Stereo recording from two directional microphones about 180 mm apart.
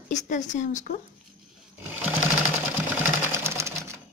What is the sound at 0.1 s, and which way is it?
Speech, 45° left (ahead or behind).